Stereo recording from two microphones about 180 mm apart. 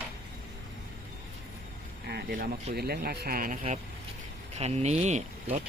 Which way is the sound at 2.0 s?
60° right (ahead or behind).